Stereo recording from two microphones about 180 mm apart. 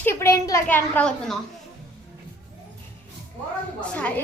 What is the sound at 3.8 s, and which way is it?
Speech, 5° left (ahead or behind).